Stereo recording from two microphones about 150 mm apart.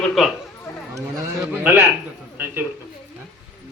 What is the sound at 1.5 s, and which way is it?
A man's voice, 10° right (ahead or behind).